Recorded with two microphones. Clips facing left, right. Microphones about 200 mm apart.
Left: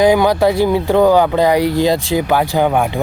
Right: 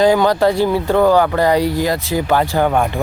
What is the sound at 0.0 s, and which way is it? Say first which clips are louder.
Speech: left 1 dB; 10° left (ahead or behind).